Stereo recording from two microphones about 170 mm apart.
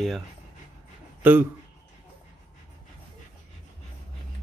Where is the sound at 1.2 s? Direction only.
10° right (ahead or behind).